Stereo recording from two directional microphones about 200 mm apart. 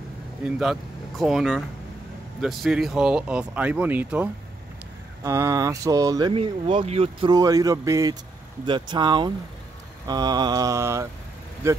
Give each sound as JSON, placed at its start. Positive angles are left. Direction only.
{"t": 0.6, "sound": "speech", "side_deg": 0}
{"t": 8.6, "sound": "mantra", "side_deg": -25}
{"t": 11.6, "sound": "speech", "side_deg": -15}